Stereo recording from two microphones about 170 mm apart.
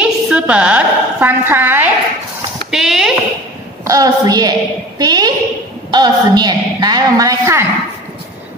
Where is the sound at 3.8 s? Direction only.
20° right (ahead or behind).